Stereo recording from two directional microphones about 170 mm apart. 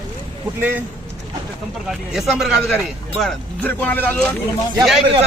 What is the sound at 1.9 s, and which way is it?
Speech, centre (ahead or behind).